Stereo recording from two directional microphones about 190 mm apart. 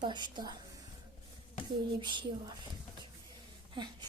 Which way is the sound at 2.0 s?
25° right (ahead or behind).